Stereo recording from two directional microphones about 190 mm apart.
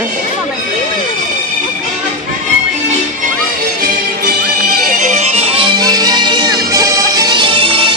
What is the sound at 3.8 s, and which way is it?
Music, 50° right (ahead or behind).